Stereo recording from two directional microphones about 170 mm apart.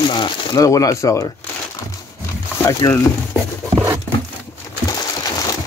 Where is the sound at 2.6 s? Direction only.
15° left (ahead or behind).